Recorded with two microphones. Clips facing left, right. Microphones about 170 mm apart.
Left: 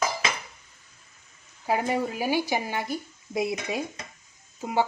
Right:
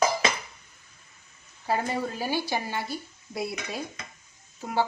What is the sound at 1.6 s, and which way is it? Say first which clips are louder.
Speech: left 2 dB; 15° left (ahead or behind).